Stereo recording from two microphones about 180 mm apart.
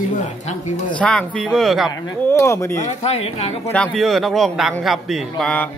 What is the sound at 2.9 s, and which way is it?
Speech, 35° left (ahead or behind).